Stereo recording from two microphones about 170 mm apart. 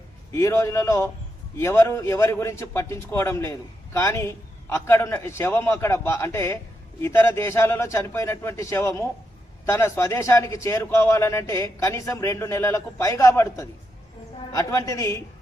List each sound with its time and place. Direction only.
0.3 s a man's voice: 15° left (ahead or behind)